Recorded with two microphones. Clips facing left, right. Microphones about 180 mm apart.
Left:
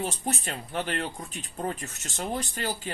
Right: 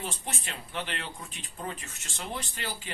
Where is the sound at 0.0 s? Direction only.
40° left (ahead or behind).